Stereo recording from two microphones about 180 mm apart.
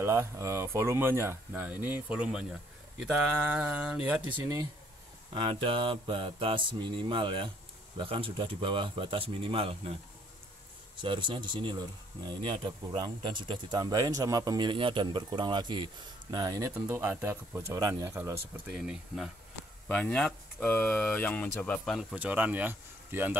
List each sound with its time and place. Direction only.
0.0 s speech: 15° right (ahead or behind)
5.3 s speech: 30° right (ahead or behind)
11.0 s speech: 25° right (ahead or behind)
18.7 s speech: 5° right (ahead or behind)